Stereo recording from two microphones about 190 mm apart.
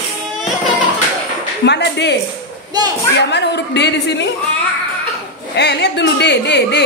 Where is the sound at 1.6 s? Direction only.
65° left (ahead or behind).